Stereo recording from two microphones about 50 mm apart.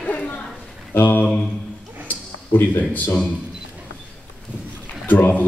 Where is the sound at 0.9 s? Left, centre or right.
Left.